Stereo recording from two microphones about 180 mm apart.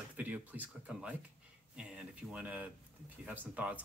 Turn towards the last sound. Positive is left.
turn(degrees=-10)  # may be behind; listen again after turning